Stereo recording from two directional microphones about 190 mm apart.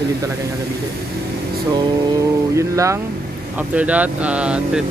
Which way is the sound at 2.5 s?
15° right (ahead or behind).